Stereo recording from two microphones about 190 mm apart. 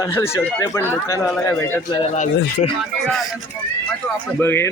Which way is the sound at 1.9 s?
30° left (ahead or behind).